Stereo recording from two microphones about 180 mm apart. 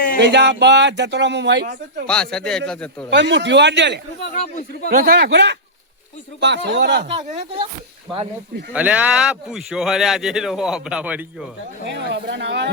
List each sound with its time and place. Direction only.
0.2 s speech: 75° right (ahead or behind)
2.0 s speech: 5° left (ahead or behind)
3.1 s speech: 80° right
4.4 s speech: 45° left (ahead or behind)
4.9 s speech: 55° right (ahead or behind)
7.1 s speech: 35° right (ahead or behind)
8.7 s speech: 10° right (ahead or behind)
12.1 s speech: 80° right